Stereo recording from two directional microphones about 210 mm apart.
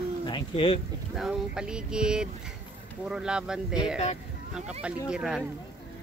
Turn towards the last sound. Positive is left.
turn(degrees=-5)  # may be behind; listen again after turning